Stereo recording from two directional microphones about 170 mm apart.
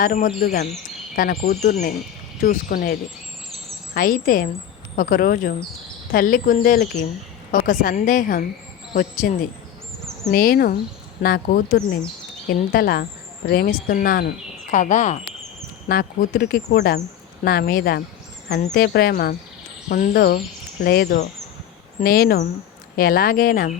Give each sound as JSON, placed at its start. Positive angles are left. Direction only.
{"t": 0.0, "sound": "speech", "side_deg": 55}
{"t": 1.1, "sound": "speech", "side_deg": 60}
{"t": 1.6, "sound": "a woman's voice", "side_deg": 45}
{"t": 2.4, "sound": "speech", "side_deg": 60}
{"t": 3.9, "sound": "a woman's voice", "side_deg": 55}
{"t": 15.9, "sound": "speech", "side_deg": 60}